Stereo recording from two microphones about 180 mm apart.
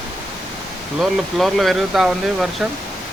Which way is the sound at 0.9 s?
Centre (ahead or behind).